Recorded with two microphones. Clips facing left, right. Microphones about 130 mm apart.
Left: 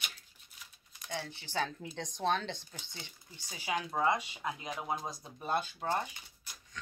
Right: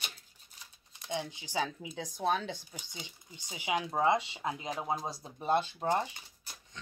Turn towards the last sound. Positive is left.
turn(degrees=-25)  # may be behind; listen again after turning